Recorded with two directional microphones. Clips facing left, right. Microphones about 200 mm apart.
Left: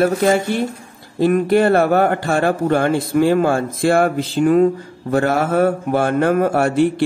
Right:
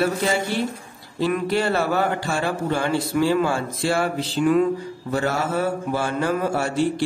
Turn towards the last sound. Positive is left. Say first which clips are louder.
# left 6 dB
turn(degrees=60)  # may be behind; listen again after turning